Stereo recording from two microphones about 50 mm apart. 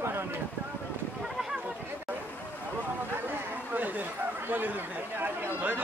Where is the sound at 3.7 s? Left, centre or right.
Right.